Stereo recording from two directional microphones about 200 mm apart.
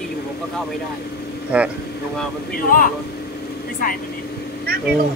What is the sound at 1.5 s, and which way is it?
Speech, 5° right (ahead or behind).